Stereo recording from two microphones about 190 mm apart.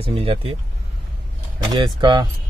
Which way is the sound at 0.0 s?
30° right (ahead or behind).